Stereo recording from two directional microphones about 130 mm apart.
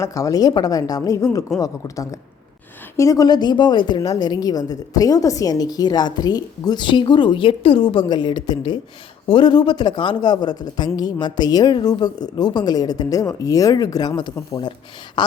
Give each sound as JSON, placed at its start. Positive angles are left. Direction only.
{"t": 0.0, "sound": "a woman's voice", "side_deg": 25}